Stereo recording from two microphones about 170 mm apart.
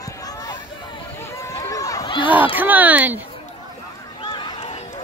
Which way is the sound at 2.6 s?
10° right (ahead or behind).